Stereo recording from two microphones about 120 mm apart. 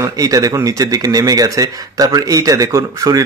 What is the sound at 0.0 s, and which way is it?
Speech, 30° right (ahead or behind).